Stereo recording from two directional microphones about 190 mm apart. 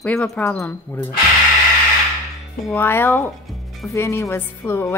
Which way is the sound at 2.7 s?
10° left (ahead or behind).